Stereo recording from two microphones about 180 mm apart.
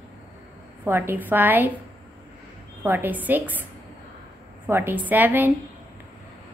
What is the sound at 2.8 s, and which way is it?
Speech, 10° right (ahead or behind).